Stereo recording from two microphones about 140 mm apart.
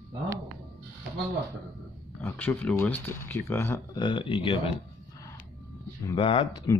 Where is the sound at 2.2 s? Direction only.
15° left (ahead or behind).